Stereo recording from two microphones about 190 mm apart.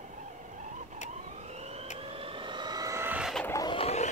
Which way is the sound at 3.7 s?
35° left (ahead or behind).